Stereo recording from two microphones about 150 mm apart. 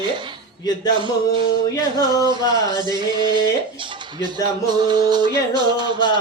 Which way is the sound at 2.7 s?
30° right (ahead or behind).